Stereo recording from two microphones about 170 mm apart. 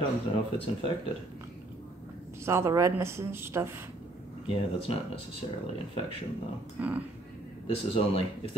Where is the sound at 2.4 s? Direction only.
15° right (ahead or behind).